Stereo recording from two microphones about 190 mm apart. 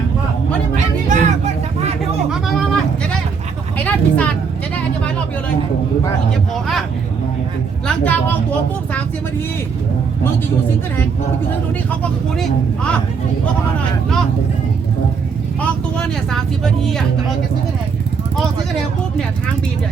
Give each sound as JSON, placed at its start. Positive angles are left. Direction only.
{"t": 1.0, "sound": "vehicle", "side_deg": -40}
{"t": 2.3, "sound": "sheep", "side_deg": 0}
{"t": 3.8, "sound": "vehicle", "side_deg": 10}
{"t": 6.3, "sound": "speech", "side_deg": 0}
{"t": 7.9, "sound": "speech", "side_deg": 10}
{"t": 12.4, "sound": "speech", "side_deg": 5}
{"t": 15.6, "sound": "speech", "side_deg": 5}